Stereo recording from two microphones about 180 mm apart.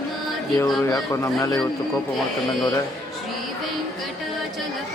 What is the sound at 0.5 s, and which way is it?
Speech, 20° left (ahead or behind).